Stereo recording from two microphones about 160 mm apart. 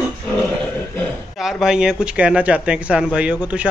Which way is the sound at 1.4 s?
5° right (ahead or behind).